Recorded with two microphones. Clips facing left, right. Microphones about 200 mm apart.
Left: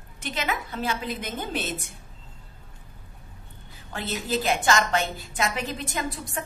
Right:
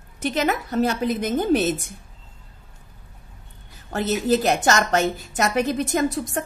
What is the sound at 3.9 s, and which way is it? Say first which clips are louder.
A woman's voice: right 8 dB; 45° right (ahead or behind).